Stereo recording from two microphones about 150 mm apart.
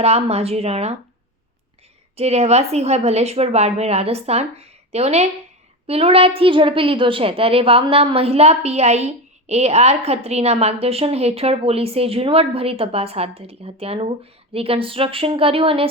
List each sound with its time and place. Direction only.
0.0 s a woman's voice: 45° right (ahead or behind)
2.1 s a woman's voice: 45° right (ahead or behind)